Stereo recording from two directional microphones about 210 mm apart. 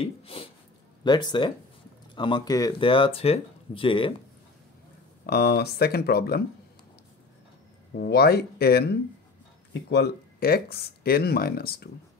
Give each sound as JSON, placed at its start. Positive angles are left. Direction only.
{"t": 0.0, "sound": "speech", "side_deg": 25}
{"t": 5.2, "sound": "speech", "side_deg": 50}
{"t": 8.0, "sound": "speech", "side_deg": 50}